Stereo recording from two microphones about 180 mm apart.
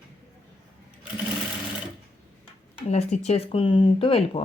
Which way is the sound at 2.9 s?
40° left (ahead or behind).